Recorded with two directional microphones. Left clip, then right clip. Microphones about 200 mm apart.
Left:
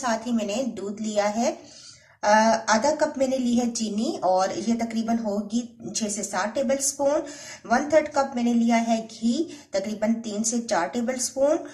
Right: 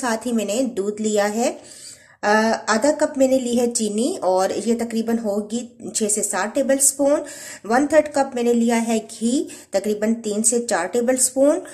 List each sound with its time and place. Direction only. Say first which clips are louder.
0.0 s speech: right 3 dB; 50° right (ahead or behind)